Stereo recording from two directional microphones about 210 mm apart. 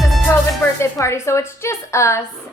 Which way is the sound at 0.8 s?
15° left (ahead or behind).